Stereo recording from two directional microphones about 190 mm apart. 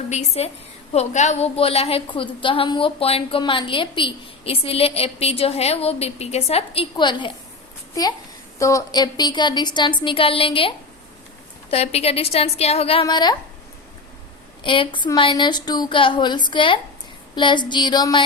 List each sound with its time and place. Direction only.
0.1 s a woman's voice: 35° left (ahead or behind)
8.5 s a woman's voice: 15° left (ahead or behind)
14.6 s speech: 25° left (ahead or behind)